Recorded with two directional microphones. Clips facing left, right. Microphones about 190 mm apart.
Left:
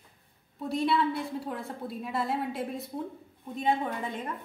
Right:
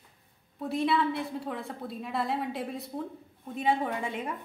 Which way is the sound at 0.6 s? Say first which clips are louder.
Even; centre (ahead or behind).